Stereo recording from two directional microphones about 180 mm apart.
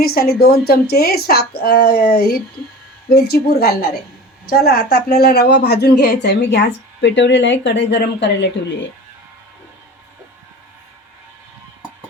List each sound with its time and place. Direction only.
0.0 s a woman's voice: 55° left (ahead or behind); by 8.4 s 75° left (ahead or behind)